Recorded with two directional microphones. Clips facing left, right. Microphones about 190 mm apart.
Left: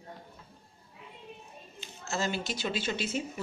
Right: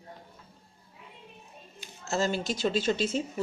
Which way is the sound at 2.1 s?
35° right (ahead or behind).